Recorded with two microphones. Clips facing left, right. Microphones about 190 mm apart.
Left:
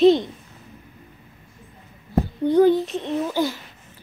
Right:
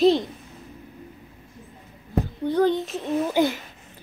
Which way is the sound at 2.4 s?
10° left (ahead or behind).